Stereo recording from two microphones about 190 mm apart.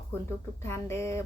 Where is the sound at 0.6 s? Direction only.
15° left (ahead or behind).